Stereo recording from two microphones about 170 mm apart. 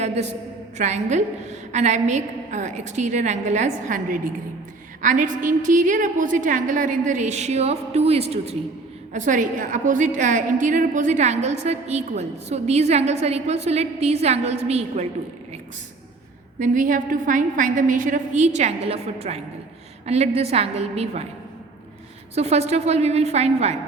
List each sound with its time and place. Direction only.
0.8 s a woman's voice: 45° right (ahead or behind)
9.1 s a woman's voice: 50° right (ahead or behind)
16.6 s a woman's voice: 50° right (ahead or behind)
22.4 s a woman's voice: 40° right (ahead or behind)